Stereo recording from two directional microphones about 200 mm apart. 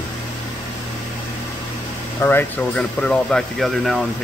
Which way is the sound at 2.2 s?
10° left (ahead or behind).